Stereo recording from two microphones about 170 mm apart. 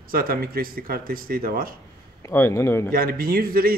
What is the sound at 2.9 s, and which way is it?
Speech, 60° right (ahead or behind).